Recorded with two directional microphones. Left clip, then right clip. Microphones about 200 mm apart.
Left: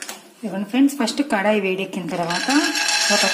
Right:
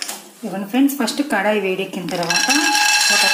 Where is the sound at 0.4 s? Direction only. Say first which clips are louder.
Right 1 dB; 10° left (ahead or behind).